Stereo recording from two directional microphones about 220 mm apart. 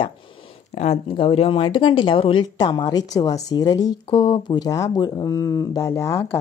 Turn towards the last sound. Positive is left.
turn(degrees=10)  # may be behind; listen again after turning